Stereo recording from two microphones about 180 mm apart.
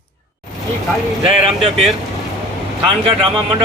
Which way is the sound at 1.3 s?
30° right (ahead or behind).